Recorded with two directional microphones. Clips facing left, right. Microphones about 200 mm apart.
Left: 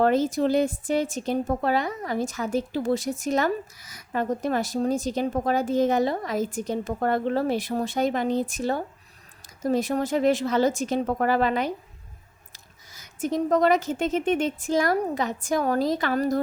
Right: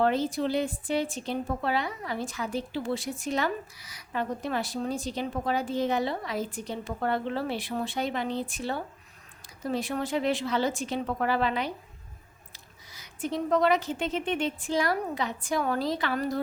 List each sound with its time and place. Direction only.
0.0 s a woman's voice: 45° left (ahead or behind)